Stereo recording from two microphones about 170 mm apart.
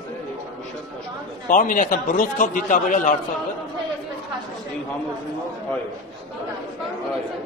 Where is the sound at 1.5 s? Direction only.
50° left (ahead or behind).